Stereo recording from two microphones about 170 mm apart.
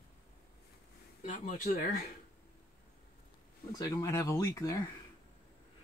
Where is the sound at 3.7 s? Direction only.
20° left (ahead or behind).